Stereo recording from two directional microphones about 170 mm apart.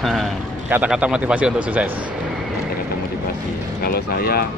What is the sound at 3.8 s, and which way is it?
Speech, 65° left (ahead or behind).